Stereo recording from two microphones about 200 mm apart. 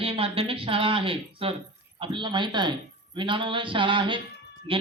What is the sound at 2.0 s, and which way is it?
Speech, 25° right (ahead or behind).